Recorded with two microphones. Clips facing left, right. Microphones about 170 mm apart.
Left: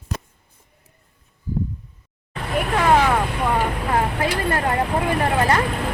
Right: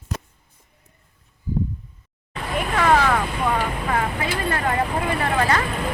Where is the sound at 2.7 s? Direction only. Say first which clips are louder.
Left 1 dB; 15° left (ahead or behind).